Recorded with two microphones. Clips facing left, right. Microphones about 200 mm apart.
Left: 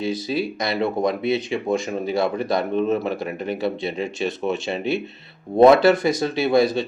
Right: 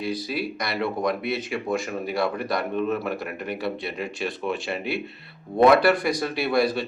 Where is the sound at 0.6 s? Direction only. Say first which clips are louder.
Left 4 dB; 25° left (ahead or behind).